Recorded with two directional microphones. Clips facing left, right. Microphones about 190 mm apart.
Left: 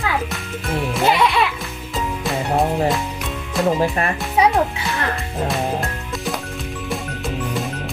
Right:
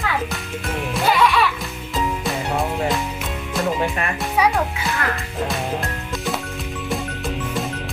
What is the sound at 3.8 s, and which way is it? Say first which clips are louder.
Music: left 3 dB; 35° left (ahead or behind).